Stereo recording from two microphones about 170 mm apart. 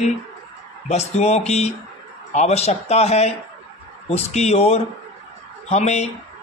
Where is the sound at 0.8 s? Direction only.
40° left (ahead or behind).